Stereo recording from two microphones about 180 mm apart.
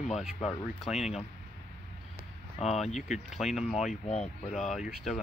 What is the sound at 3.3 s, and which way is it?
Speech, centre (ahead or behind).